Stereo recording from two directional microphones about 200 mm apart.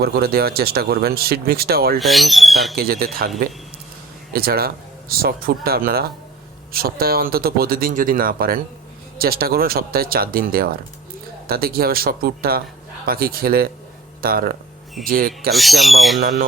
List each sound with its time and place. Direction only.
0.0 s speech: 50° right (ahead or behind)
2.0 s speech: centre (ahead or behind)
2.7 s speech: 50° right (ahead or behind)
15.5 s speech: centre (ahead or behind)